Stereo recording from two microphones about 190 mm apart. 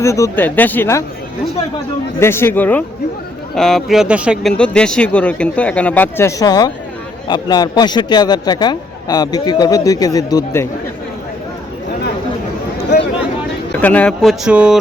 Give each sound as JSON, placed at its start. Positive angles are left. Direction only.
{"t": 0.0, "sound": "speech", "side_deg": 15}
{"t": 2.1, "sound": "speech", "side_deg": 15}
{"t": 4.5, "sound": "speech", "side_deg": 5}
{"t": 12.7, "sound": "chatter", "side_deg": 60}
{"t": 13.7, "sound": "speech", "side_deg": 10}